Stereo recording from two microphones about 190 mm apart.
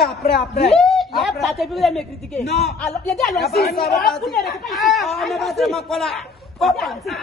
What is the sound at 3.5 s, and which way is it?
Speech, 55° left (ahead or behind).